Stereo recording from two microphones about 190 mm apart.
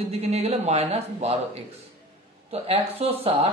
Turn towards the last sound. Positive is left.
turn(degrees=-30)  # may be behind; listen again after turning